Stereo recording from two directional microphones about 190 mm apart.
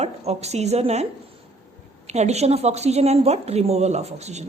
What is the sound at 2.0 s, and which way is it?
A woman's voice, 35° right (ahead or behind).